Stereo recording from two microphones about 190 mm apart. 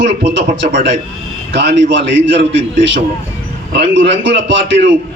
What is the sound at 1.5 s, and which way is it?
Speech, 65° right (ahead or behind).